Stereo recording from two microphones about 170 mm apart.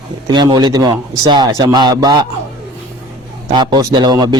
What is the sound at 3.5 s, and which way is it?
Speech, 25° right (ahead or behind).